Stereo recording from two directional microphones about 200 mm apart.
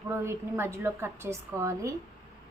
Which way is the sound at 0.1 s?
10° right (ahead or behind).